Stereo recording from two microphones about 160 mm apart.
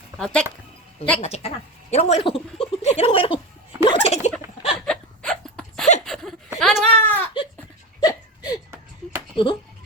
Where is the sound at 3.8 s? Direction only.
35° left (ahead or behind).